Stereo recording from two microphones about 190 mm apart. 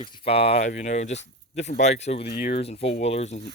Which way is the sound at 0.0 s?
30° left (ahead or behind).